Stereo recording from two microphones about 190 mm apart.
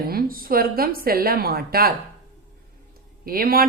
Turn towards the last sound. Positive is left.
turn(degrees=-50)  # may be behind; listen again after turning